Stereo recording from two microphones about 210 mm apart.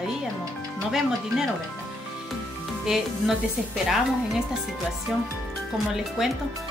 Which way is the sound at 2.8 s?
5° right (ahead or behind).